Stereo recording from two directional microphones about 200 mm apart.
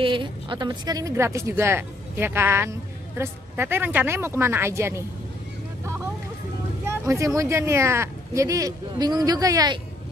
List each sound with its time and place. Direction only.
0.0 s a woman's voice: 25° right (ahead or behind)
6.9 s a woman's voice: 15° right (ahead or behind)